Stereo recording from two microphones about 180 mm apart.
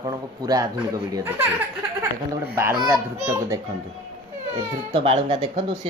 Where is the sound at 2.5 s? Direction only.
15° right (ahead or behind).